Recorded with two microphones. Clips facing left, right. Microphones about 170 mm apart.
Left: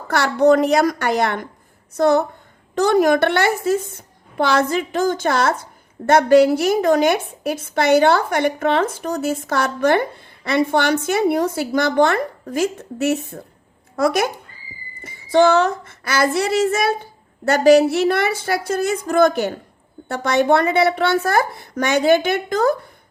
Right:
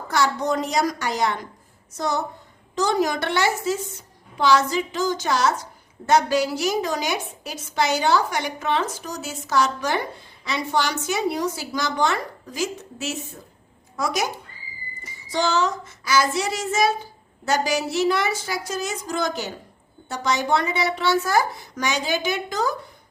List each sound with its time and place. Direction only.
0.1 s a woman's voice: 60° left (ahead or behind)